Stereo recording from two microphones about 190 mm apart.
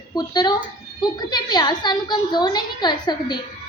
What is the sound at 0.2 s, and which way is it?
A woman's voice, 20° left (ahead or behind).